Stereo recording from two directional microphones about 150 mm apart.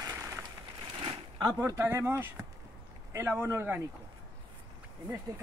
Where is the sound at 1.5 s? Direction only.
15° right (ahead or behind).